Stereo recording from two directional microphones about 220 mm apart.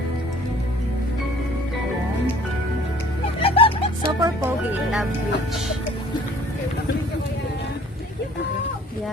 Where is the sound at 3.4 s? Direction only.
25° left (ahead or behind).